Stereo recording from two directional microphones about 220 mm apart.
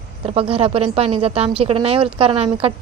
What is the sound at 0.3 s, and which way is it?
Speech, 25° right (ahead or behind).